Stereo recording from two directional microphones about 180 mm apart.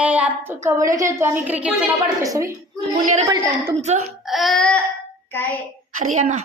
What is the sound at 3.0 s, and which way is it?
A woman's voice, 40° right (ahead or behind).